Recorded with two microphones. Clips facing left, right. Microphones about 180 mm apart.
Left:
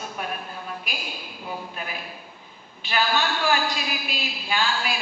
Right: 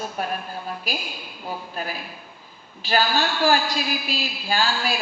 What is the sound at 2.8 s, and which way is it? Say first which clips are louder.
A woman's voice: right 2 dB; 35° right (ahead or behind).